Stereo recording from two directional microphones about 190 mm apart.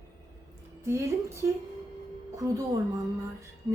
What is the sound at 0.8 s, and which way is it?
A woman's voice, 15° right (ahead or behind).